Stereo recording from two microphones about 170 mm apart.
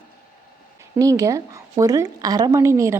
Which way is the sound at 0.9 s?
20° right (ahead or behind).